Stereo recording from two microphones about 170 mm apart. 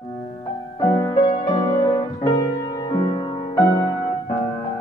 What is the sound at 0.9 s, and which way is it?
Music, 20° left (ahead or behind).